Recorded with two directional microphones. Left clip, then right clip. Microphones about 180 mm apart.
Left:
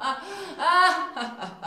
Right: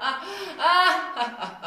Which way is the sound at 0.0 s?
40° left (ahead or behind).